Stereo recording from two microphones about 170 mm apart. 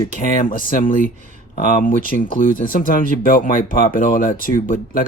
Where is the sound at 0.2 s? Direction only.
55° left (ahead or behind).